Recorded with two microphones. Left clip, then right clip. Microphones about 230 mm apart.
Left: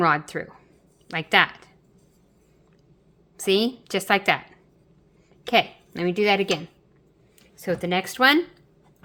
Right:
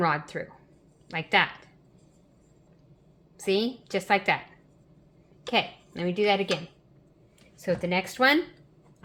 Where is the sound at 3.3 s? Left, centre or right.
Left.